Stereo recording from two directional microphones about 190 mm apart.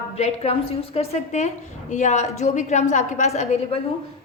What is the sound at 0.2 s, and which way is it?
A woman's voice, 30° left (ahead or behind).